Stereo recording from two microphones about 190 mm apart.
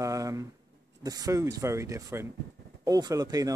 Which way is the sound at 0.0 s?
15° right (ahead or behind).